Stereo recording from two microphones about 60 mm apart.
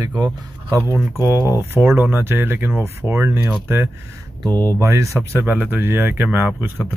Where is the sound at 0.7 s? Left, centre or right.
Right.